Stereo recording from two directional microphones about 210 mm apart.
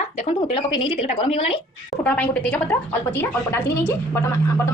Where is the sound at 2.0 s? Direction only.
5° left (ahead or behind).